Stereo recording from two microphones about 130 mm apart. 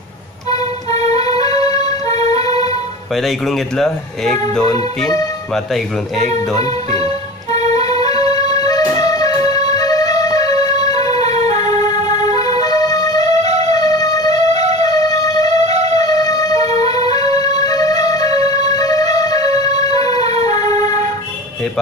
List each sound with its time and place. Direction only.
1.4 s music: 30° left (ahead or behind)
3.2 s speech: centre (ahead or behind)
6.5 s music: 30° left (ahead or behind)
8.1 s music: 30° left (ahead or behind)
11.1 s music: 55° right (ahead or behind)
11.8 s music: 30° left (ahead or behind)
13.4 s music: 55° right (ahead or behind)
13.7 s music: 30° left (ahead or behind)
14.5 s music: 55° right (ahead or behind)
14.8 s music: 30° left (ahead or behind)
15.6 s music: 55° right (ahead or behind)
16.0 s music: 30° left (ahead or behind)